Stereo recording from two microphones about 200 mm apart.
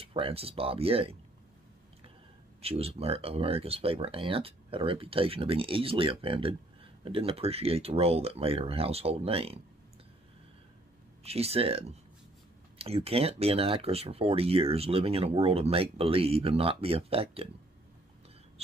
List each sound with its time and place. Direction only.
0.0 s speech: 30° right (ahead or behind)
2.6 s speech: 30° right (ahead or behind)
11.2 s speech: 30° right (ahead or behind)